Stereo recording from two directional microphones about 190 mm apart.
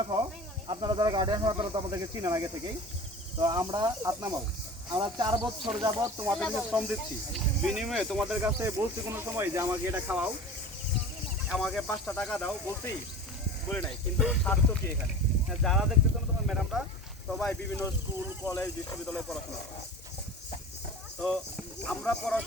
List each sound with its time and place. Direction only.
0.7 s speech: 20° right (ahead or behind)
6.1 s speech: 10° right (ahead or behind)
11.4 s speech: centre (ahead or behind)
18.4 s speech: 15° left (ahead or behind)
21.2 s speech: 5° left (ahead or behind)